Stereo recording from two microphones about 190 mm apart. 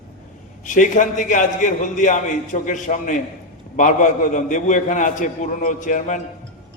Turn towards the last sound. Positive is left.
turn(degrees=45)  # may be behind; listen again after turning